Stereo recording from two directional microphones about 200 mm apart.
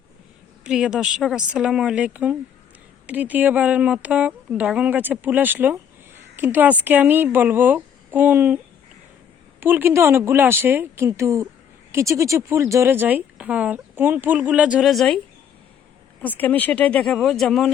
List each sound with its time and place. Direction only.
0.6 s a woman's voice: 5° right (ahead or behind)
9.6 s speech: 10° right (ahead or behind)
16.2 s speech: 10° left (ahead or behind)